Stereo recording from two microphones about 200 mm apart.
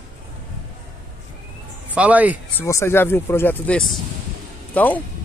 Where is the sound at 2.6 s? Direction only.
15° left (ahead or behind).